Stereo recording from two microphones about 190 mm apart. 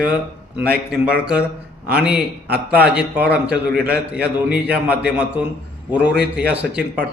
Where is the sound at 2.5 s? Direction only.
55° right (ahead or behind).